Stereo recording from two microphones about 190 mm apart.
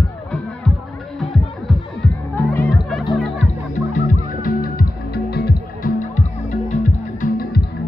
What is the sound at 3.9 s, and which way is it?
Music, 45° left (ahead or behind).